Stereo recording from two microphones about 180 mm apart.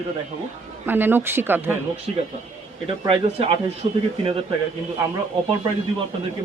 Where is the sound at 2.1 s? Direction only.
35° right (ahead or behind).